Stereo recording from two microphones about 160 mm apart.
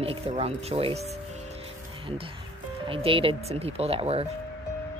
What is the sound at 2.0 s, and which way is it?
Speech, 35° right (ahead or behind).